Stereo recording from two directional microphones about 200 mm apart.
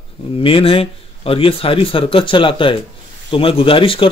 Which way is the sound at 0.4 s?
25° left (ahead or behind).